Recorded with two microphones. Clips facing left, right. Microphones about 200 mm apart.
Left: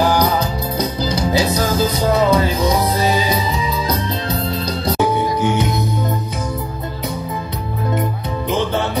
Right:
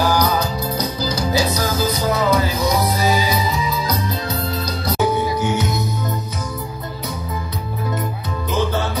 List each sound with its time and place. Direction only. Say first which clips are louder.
0.0 s music: left 2 dB; 25° left (ahead or behind)